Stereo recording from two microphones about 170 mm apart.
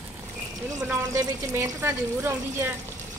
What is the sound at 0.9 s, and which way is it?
Speech, 20° right (ahead or behind).